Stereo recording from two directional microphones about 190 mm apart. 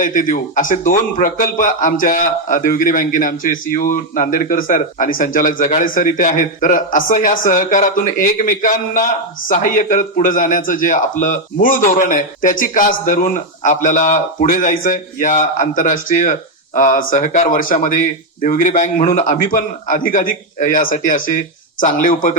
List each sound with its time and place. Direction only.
0.0 s speech: 45° left (ahead or behind)